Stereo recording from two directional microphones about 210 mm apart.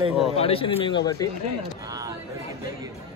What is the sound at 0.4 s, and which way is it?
Speech, 25° left (ahead or behind).